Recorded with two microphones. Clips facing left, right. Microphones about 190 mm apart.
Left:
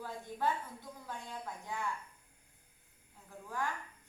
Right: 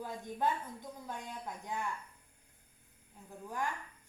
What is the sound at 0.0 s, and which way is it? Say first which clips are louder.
Speech: right 1 dB; 20° right (ahead or behind).